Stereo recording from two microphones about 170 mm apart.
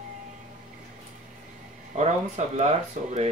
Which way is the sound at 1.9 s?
40° right (ahead or behind).